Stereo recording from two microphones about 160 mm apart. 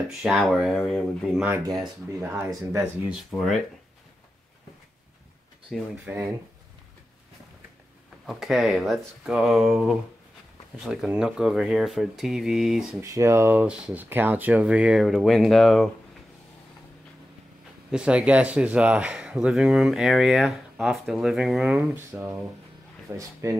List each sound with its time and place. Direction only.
0.2 s speech: centre (ahead or behind)
2.3 s speech: 15° right (ahead or behind)
3.3 s speech: centre (ahead or behind)
5.7 s speech: centre (ahead or behind)
6.0 s speech: 15° right (ahead or behind)
8.3 s speech: centre (ahead or behind)
13.0 s speech: 20° right (ahead or behind); by 15.9 s centre (ahead or behind)
17.9 s speech: 5° right (ahead or behind)